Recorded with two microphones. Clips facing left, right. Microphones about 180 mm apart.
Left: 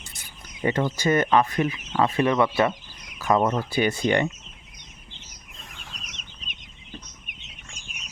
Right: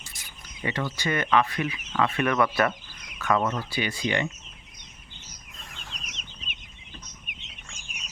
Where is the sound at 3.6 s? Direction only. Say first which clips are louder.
Left 6 dB; 50° left (ahead or behind).